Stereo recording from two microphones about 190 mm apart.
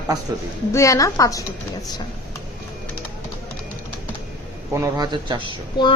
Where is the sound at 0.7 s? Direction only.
15° left (ahead or behind).